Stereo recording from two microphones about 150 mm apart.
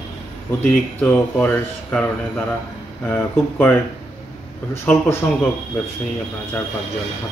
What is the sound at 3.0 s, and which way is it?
Speech, 10° left (ahead or behind).